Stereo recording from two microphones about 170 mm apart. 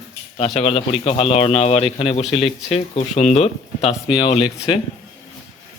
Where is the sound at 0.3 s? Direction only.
35° left (ahead or behind).